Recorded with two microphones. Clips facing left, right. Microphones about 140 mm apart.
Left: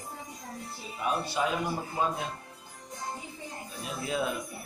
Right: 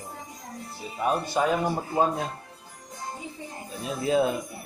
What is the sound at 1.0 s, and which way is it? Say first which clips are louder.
Speech: right 5 dB; 45° right (ahead or behind).